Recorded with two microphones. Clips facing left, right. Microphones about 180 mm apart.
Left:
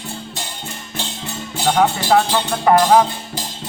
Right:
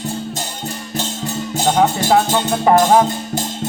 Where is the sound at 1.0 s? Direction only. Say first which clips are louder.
Right 5 dB; 40° right (ahead or behind).